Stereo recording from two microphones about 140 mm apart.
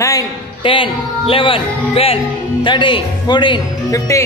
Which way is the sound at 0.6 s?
40° left (ahead or behind).